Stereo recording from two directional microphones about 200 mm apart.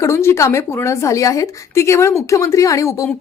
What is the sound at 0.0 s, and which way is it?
Speech, 15° left (ahead or behind).